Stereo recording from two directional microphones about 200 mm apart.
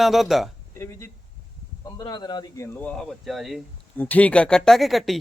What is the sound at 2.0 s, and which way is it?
Speech, 20° left (ahead or behind).